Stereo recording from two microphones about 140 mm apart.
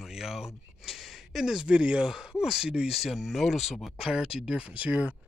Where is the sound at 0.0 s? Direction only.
5° right (ahead or behind).